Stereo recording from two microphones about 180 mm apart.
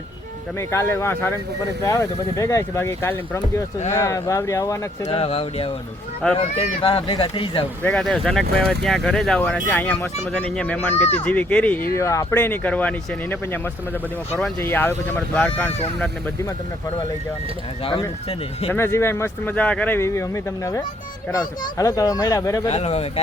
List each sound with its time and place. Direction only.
0.7 s speech: 15° left (ahead or behind)
5.0 s speech: 35° left (ahead or behind)
7.8 s speech: 5° left (ahead or behind)
14.6 s speech: 10° left (ahead or behind)
18.7 s speech: 15° left (ahead or behind)
22.6 s speech: 35° left (ahead or behind)